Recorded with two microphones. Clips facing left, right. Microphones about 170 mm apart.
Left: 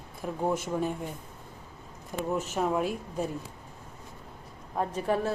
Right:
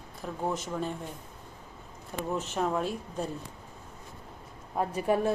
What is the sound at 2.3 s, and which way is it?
Speech, 5° left (ahead or behind).